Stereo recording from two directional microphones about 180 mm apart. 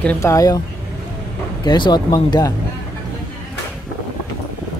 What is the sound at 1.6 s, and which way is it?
Speech, 25° left (ahead or behind).